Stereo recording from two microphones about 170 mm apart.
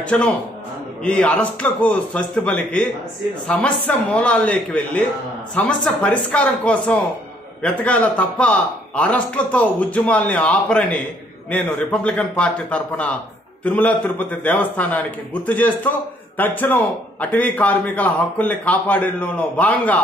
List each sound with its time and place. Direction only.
0.0 s a man's voice: 5° left (ahead or behind)